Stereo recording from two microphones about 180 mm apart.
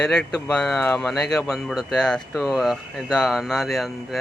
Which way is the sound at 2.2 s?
15° left (ahead or behind).